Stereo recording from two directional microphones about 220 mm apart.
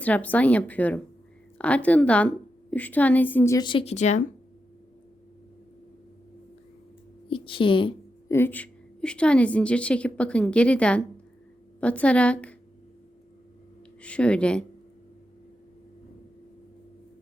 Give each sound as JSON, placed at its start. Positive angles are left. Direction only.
{"t": 0.0, "sound": "a woman's voice", "side_deg": 5}
{"t": 7.3, "sound": "a woman's voice", "side_deg": 25}
{"t": 8.3, "sound": "a woman's voice", "side_deg": 10}
{"t": 14.0, "sound": "a woman's voice", "side_deg": 5}